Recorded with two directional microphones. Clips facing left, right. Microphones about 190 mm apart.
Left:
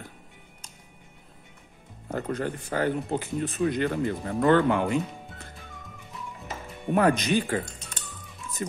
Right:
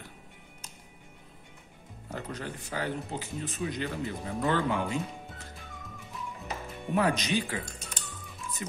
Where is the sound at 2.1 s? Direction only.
50° left (ahead or behind).